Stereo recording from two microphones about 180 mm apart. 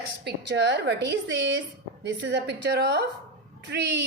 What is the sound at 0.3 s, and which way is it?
A woman's voice, 75° right (ahead or behind).